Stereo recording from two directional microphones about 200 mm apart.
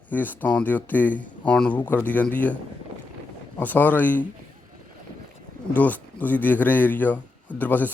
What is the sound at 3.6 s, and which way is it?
Speech, 10° left (ahead or behind).